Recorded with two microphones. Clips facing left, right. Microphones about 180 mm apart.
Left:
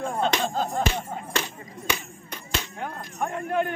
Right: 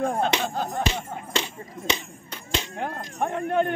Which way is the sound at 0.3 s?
10° right (ahead or behind).